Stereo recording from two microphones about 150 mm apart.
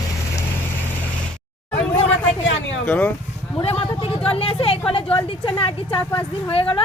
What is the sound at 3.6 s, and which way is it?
Speech, 40° left (ahead or behind).